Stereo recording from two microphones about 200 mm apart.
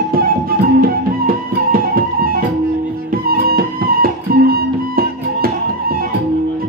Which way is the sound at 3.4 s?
50° right (ahead or behind).